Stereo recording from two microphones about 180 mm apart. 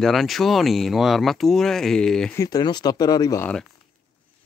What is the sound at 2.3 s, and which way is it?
Speech, 20° left (ahead or behind).